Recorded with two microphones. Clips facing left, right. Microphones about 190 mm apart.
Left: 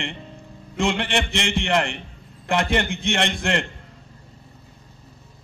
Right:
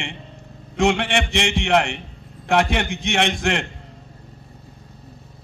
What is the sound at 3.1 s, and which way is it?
Speech, 65° right (ahead or behind).